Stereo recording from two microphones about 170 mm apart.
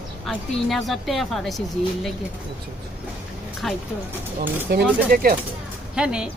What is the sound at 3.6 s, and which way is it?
Speech, centre (ahead or behind).